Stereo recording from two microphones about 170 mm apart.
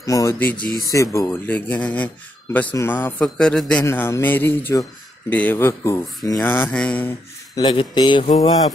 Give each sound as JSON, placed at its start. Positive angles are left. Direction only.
{"t": 0.0, "sound": "speech", "side_deg": 20}
{"t": 7.5, "sound": "speech", "side_deg": 25}